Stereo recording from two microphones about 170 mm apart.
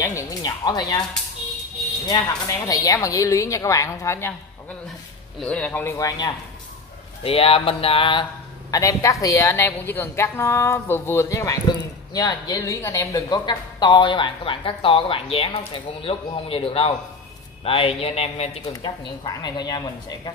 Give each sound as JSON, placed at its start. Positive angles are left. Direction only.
{"t": 0.0, "sound": "speech", "side_deg": 20}
{"t": 2.7, "sound": "speech", "side_deg": 20}
{"t": 5.4, "sound": "a woman's voice", "side_deg": 5}
{"t": 7.2, "sound": "a woman's voice", "side_deg": 35}
{"t": 18.7, "sound": "speech", "side_deg": 25}